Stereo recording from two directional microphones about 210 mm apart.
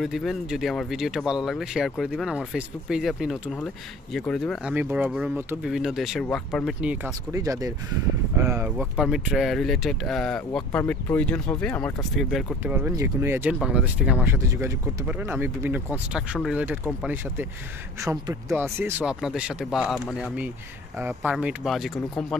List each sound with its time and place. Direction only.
0.0 s speech: centre (ahead or behind)
6.8 s speech: 10° right (ahead or behind)
12.7 s speech: 10° right (ahead or behind)